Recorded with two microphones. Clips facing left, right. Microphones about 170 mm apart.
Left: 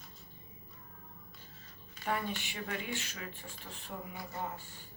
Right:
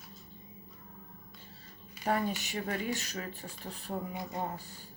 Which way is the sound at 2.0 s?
40° right (ahead or behind).